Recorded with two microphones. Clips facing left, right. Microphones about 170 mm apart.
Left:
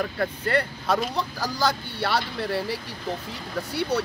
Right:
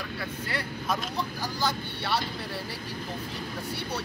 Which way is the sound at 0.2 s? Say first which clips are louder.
Left 10 dB; 60° left (ahead or behind).